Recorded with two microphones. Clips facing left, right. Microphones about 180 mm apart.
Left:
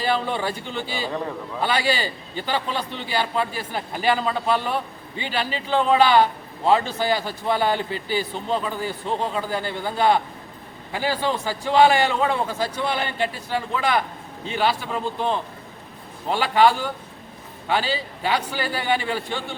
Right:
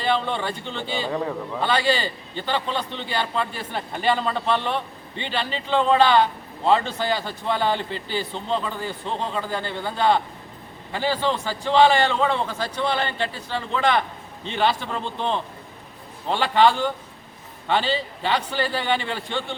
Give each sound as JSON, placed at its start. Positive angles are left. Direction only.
{"t": 0.0, "sound": "a man's voice", "side_deg": 5}